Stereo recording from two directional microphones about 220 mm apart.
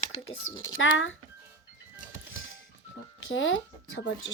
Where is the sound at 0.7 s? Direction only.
60° left (ahead or behind).